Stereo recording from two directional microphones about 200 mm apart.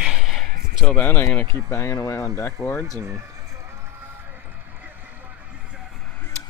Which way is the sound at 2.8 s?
15° right (ahead or behind).